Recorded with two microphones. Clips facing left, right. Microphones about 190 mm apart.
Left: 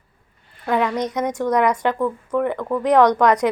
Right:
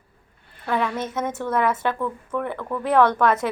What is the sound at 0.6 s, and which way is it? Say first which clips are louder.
A woman's voice: left 4 dB; 15° left (ahead or behind).